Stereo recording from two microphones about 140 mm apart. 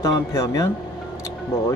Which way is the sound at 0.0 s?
25° left (ahead or behind).